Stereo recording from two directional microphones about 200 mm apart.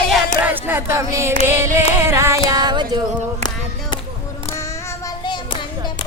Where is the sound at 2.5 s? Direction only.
20° right (ahead or behind).